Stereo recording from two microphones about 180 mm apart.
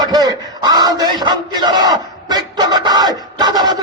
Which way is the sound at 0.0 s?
20° right (ahead or behind).